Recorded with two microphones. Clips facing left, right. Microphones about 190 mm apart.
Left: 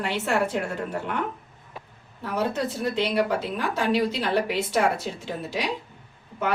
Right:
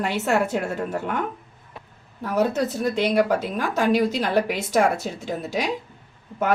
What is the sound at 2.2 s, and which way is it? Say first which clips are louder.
A woman's voice: right 4 dB; 45° right (ahead or behind).